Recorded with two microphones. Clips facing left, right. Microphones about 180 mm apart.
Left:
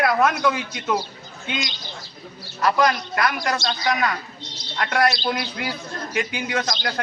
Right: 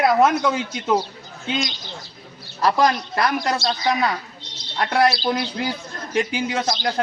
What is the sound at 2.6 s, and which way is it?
A man's voice, 35° right (ahead or behind).